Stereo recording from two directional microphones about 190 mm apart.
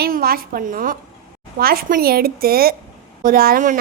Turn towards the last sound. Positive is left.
turn(degrees=-45)  # may be behind; listen again after turning